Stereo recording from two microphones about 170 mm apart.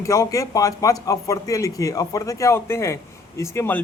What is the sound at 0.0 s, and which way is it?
A man's voice, 20° left (ahead or behind).